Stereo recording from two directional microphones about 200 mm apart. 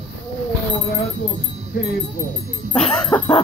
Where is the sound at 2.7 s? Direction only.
Centre (ahead or behind).